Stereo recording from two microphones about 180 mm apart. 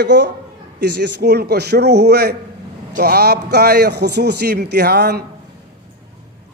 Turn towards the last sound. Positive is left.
turn(degrees=-60)  # may be behind; listen again after turning